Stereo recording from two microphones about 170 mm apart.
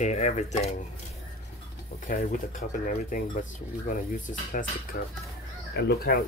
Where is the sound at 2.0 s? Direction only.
50° left (ahead or behind).